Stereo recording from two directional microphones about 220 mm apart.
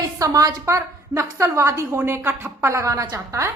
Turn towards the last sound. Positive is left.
turn(degrees=-15)  # may be behind; listen again after turning